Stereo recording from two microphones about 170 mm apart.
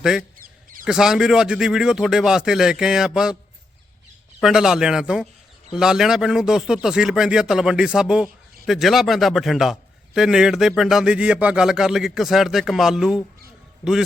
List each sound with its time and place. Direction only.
0.0 s speech: 5° right (ahead or behind)
0.3 s a sound: 55° right (ahead or behind)
0.9 s speech: 5° right (ahead or behind)
4.4 s speech: centre (ahead or behind)